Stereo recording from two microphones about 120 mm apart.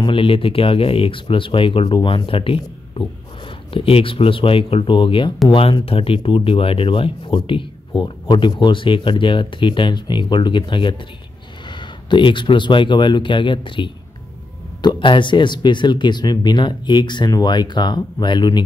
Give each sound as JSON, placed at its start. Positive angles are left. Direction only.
{"t": 0.0, "sound": "speech", "side_deg": 45}